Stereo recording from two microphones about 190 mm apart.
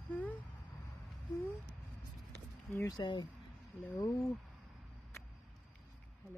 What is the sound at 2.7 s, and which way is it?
Speech, 15° left (ahead or behind).